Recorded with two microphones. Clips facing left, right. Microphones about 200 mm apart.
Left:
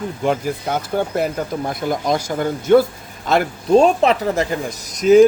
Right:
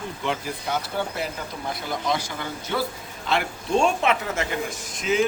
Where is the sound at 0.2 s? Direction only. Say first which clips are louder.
Left 9 dB; 45° left (ahead or behind).